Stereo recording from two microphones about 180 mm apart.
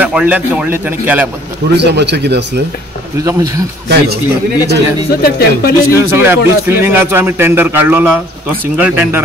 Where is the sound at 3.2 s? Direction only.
20° right (ahead or behind).